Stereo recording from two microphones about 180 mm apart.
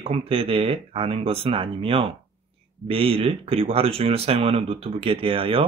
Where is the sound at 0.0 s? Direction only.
30° right (ahead or behind).